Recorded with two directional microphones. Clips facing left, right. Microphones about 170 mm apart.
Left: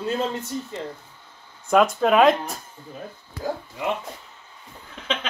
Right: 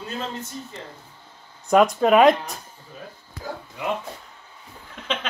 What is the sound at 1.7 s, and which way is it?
Speech, centre (ahead or behind).